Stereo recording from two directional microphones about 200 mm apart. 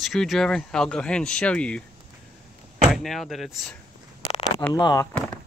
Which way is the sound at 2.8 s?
Centre (ahead or behind).